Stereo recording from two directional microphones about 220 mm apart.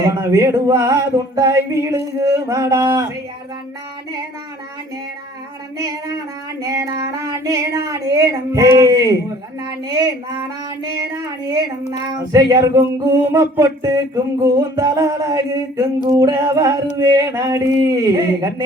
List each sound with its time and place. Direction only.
0.0 s child singing: 15° right (ahead or behind)
5.7 s child singing: 15° right (ahead or behind)
11.9 s child singing: 15° right (ahead or behind)